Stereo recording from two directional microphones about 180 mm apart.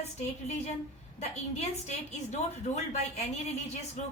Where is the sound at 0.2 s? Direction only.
40° left (ahead or behind).